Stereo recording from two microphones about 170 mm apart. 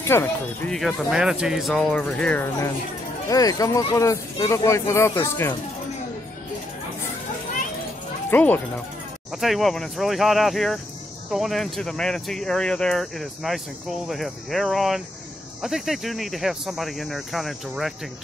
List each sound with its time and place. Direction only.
0.0 s speech: 15° left (ahead or behind)
0.7 s speech: centre (ahead or behind)
8.3 s speech: 10° left (ahead or behind)